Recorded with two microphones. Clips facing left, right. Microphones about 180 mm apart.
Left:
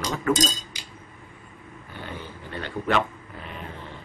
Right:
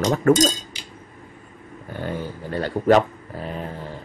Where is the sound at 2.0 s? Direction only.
45° right (ahead or behind).